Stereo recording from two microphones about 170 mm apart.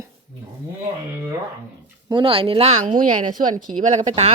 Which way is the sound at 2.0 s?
30° right (ahead or behind).